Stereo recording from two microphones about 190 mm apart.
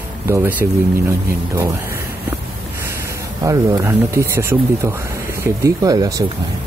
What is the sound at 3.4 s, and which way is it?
Speech, 15° right (ahead or behind).